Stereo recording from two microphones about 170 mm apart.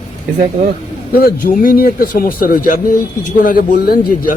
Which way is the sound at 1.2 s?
60° left (ahead or behind).